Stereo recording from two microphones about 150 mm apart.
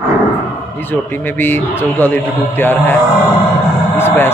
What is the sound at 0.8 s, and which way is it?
Speech, 15° left (ahead or behind).